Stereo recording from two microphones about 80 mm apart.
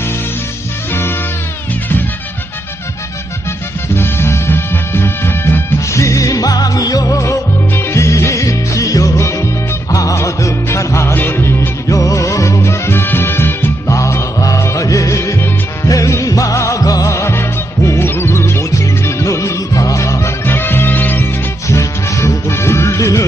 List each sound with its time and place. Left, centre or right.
3.9 s music: left
13.8 s music: left
21.6 s music: left